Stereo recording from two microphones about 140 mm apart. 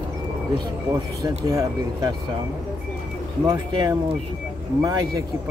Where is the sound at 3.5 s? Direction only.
30° right (ahead or behind).